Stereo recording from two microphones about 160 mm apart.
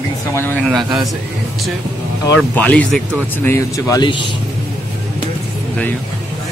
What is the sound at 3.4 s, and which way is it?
Speech, 20° left (ahead or behind).